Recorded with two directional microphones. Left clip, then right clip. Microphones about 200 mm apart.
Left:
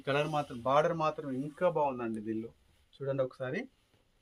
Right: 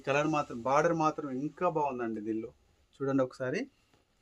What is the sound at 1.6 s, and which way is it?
Speech, 35° right (ahead or behind).